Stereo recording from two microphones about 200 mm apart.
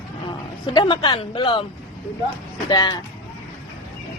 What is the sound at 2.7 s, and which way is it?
Speech, 20° left (ahead or behind).